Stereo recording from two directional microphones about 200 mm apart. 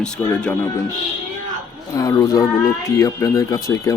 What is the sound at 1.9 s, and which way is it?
Speech, 15° left (ahead or behind).